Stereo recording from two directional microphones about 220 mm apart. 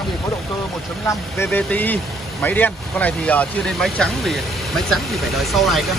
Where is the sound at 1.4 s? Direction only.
10° left (ahead or behind).